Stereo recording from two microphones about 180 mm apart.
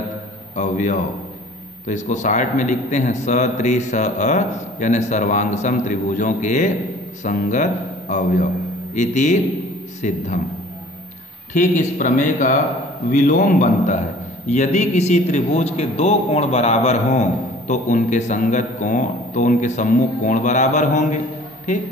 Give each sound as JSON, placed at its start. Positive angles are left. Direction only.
{"t": 0.6, "sound": "a sound", "side_deg": 45}
{"t": 1.9, "sound": "a man's voice", "side_deg": 40}
{"t": 11.5, "sound": "a man's voice", "side_deg": 45}